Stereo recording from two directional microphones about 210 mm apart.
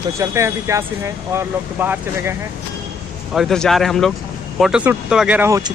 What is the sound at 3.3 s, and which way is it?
Speech, centre (ahead or behind).